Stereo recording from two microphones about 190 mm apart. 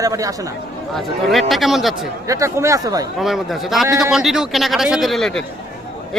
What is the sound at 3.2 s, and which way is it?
A man's voice, centre (ahead or behind).